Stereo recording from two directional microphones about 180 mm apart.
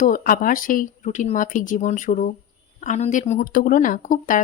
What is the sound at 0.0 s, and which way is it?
Speech, 50° left (ahead or behind).